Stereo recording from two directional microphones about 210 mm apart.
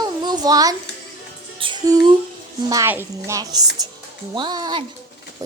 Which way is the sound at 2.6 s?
15° right (ahead or behind).